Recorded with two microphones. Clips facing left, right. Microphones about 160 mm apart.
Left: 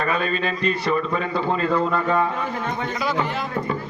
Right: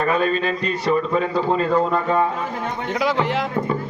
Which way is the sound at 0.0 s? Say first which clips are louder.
Right 4 dB; 40° right (ahead or behind).